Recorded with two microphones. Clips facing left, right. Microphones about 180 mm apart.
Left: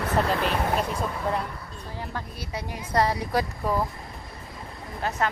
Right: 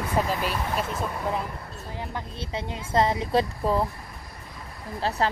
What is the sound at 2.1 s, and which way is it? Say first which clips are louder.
Speech: right 2 dB; 25° right (ahead or behind).